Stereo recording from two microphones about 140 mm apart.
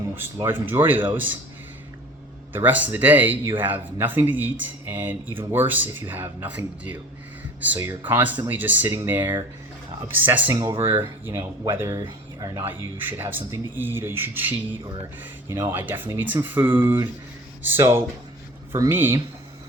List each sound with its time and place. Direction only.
0.1 s speech: 15° right (ahead or behind)
2.5 s speech: 15° right (ahead or behind)
12.6 s speech: 15° right (ahead or behind)